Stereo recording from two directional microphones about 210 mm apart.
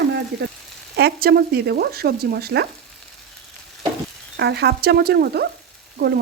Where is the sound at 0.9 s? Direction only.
50° right (ahead or behind).